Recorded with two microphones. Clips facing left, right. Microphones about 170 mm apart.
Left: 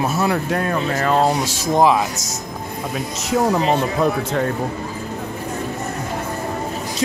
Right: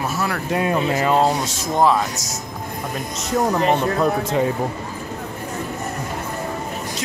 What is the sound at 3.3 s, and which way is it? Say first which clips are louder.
Speech: left 1 dB; 5° left (ahead or behind).